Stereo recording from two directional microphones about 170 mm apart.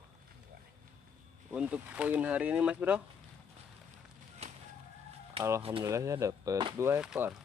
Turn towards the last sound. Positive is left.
turn(degrees=-5)  # may be behind; listen again after turning